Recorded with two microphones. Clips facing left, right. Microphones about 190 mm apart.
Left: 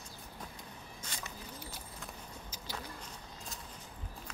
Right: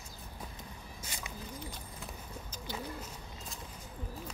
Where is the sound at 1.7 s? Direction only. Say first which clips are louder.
Right 1 dB; 5° left (ahead or behind).